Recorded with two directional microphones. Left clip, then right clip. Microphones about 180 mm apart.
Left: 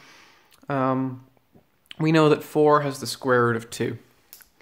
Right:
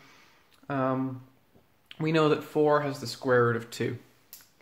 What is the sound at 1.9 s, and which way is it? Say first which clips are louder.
Speech: left 6 dB; 45° left (ahead or behind).